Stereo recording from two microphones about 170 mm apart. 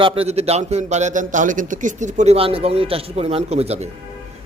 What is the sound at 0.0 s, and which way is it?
A man's voice, 35° right (ahead or behind).